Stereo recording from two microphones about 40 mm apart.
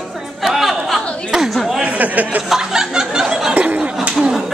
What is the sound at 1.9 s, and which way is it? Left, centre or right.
Speech, right.